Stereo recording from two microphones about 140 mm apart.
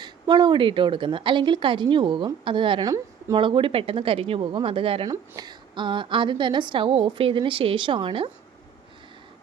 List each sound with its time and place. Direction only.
0.0 s a woman's voice: 30° right (ahead or behind)
5.0 s speech: 25° right (ahead or behind)
5.5 s a woman's voice: 35° right (ahead or behind)